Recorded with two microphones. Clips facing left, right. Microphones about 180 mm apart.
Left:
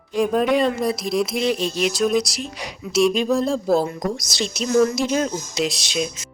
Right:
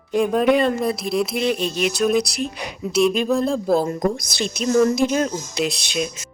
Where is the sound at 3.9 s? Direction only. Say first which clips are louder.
Right 4 dB; 55° right (ahead or behind).